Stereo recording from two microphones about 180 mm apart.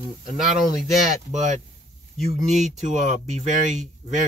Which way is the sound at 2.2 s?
35° right (ahead or behind).